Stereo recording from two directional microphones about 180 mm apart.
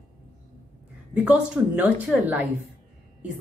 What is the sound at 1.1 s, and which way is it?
Speech, 5° right (ahead or behind).